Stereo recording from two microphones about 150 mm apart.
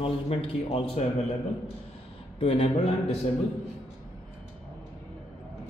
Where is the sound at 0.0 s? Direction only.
40° left (ahead or behind).